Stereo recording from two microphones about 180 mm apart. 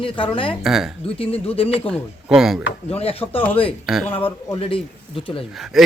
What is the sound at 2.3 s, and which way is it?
Speech, 5° right (ahead or behind).